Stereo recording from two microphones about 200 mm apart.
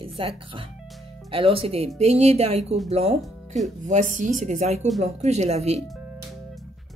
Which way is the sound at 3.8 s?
40° right (ahead or behind).